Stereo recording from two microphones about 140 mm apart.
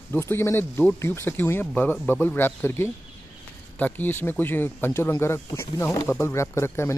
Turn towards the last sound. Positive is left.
turn(degrees=20)  # may be behind; listen again after turning